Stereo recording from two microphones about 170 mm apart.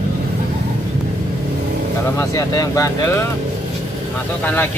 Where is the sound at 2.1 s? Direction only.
20° left (ahead or behind).